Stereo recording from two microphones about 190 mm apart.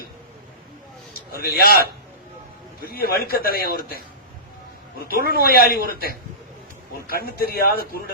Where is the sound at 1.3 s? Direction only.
55° left (ahead or behind).